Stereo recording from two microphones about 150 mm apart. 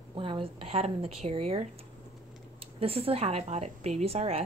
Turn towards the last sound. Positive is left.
turn(degrees=-45)  # may be behind; listen again after turning